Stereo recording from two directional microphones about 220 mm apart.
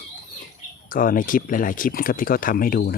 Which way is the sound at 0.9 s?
40° left (ahead or behind).